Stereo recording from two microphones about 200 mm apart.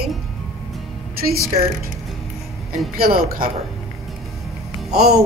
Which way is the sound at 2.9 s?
50° right (ahead or behind).